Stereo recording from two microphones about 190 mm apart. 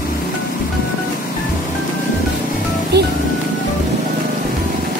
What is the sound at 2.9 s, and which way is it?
Music, 60° right (ahead or behind).